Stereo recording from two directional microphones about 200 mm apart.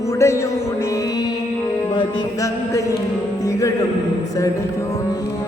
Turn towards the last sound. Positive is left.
turn(degrees=15)  # may be behind; listen again after turning